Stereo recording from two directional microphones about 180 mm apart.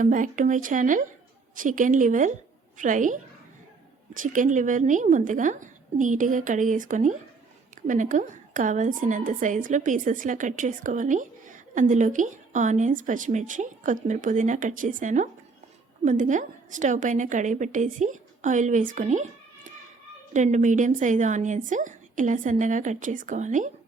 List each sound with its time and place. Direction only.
0.0 s a woman's voice: 45° right (ahead or behind)